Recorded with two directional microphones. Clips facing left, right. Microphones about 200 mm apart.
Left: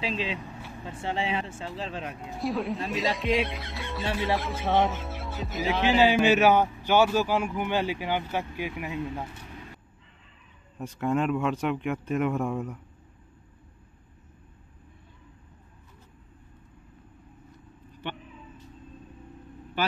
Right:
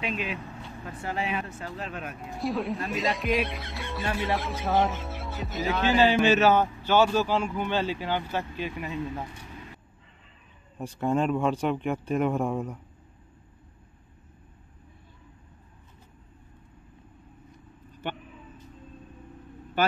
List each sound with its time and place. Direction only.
0.0 s speech: 30° left (ahead or behind)
0.5 s vehicle: 5° left (ahead or behind)
0.8 s speech: 25° left (ahead or behind)
2.2 s speech: centre (ahead or behind)
5.8 s a man's voice: 10° left (ahead or behind)
10.8 s speech: 30° right (ahead or behind)
18.0 s speech: 45° right (ahead or behind)